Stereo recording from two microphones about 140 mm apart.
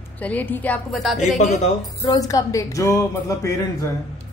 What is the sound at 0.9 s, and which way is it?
Speech, centre (ahead or behind).